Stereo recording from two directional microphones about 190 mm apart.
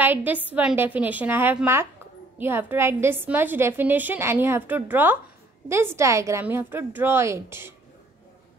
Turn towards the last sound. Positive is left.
turn(degrees=-15)  # may be behind; listen again after turning